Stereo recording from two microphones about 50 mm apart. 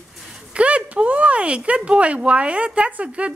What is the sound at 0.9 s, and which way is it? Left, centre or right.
Speech, right.